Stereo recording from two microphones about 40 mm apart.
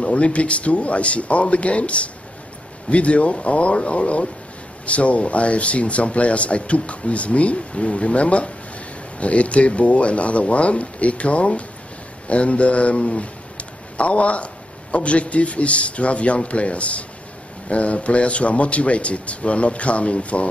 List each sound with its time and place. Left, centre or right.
0.0 s speech: left